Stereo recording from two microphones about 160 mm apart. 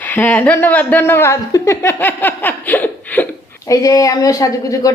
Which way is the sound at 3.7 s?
20° left (ahead or behind).